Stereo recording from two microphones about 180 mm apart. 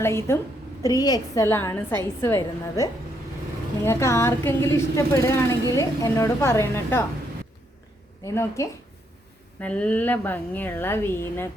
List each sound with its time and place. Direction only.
0.0 s a woman's voice: 15° left (ahead or behind)
8.2 s a woman's voice: 15° left (ahead or behind)